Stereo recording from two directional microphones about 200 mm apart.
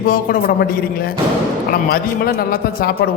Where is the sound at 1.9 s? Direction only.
45° left (ahead or behind).